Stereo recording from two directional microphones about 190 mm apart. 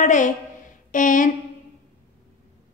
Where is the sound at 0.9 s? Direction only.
45° left (ahead or behind).